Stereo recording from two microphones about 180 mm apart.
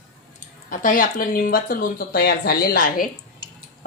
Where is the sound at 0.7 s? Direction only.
50° left (ahead or behind).